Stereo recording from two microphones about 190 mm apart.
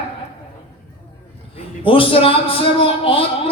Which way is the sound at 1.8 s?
30° left (ahead or behind).